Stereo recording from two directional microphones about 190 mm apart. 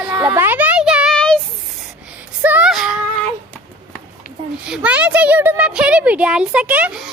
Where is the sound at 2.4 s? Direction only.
5° right (ahead or behind).